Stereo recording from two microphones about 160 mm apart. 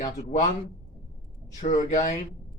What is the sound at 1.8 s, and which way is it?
Speech, 50° left (ahead or behind).